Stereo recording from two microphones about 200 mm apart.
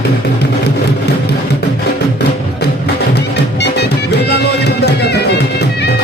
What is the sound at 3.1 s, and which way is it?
Music, 60° left (ahead or behind).